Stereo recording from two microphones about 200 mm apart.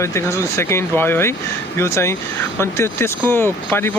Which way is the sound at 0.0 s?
15° left (ahead or behind).